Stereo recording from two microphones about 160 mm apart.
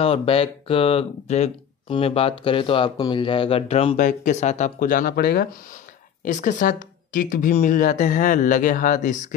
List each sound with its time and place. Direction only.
0.0 s speech: 35° left (ahead or behind)
3.9 s speech: 50° left (ahead or behind); by 5.5 s 80° left
6.2 s speech: 50° left (ahead or behind)